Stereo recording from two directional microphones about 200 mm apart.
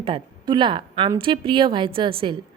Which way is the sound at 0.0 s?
25° right (ahead or behind).